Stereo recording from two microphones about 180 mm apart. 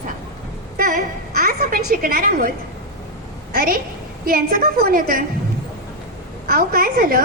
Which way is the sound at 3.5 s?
55° right (ahead or behind).